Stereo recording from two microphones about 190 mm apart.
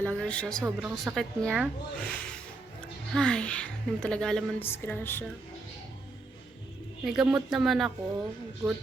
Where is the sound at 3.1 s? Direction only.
5° left (ahead or behind).